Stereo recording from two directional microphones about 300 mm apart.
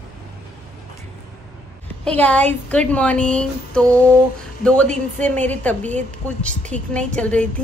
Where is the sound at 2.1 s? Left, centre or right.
Centre.